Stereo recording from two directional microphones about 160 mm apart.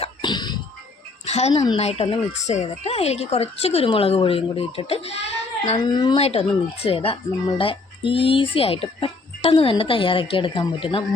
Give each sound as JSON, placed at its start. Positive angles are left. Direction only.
{"t": 0.0, "sound": "a sound", "side_deg": 30}
{"t": 1.2, "sound": "a woman's voice", "side_deg": 45}
{"t": 5.8, "sound": "speech", "side_deg": 25}
{"t": 6.1, "sound": "a woman's voice", "side_deg": 40}